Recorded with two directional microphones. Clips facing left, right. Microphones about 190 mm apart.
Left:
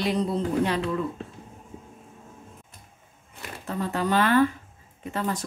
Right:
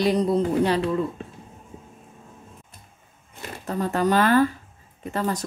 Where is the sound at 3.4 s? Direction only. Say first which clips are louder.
Right 3 dB; 40° right (ahead or behind).